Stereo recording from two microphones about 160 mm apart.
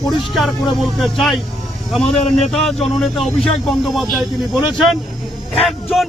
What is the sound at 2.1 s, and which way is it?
Speech, 45° left (ahead or behind).